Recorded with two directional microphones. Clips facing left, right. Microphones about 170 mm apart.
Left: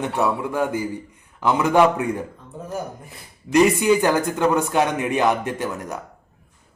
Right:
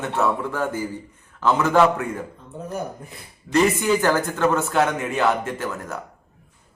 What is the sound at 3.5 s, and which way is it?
A man's voice, 15° left (ahead or behind).